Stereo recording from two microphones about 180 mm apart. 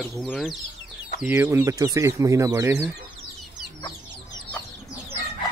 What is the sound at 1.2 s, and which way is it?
Speech, 10° right (ahead or behind).